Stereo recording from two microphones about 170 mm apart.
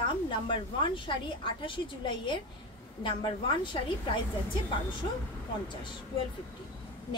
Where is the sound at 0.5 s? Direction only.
30° left (ahead or behind).